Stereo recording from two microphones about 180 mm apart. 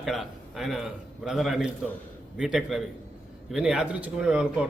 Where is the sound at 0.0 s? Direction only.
Centre (ahead or behind).